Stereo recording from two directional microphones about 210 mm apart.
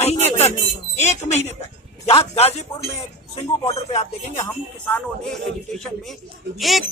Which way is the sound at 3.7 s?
30° left (ahead or behind).